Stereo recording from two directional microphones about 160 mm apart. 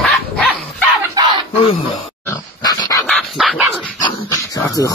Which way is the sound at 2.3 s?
25° left (ahead or behind).